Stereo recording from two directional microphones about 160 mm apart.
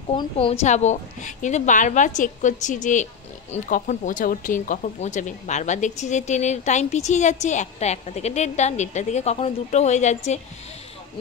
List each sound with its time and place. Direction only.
0.1 s speech: 35° left (ahead or behind)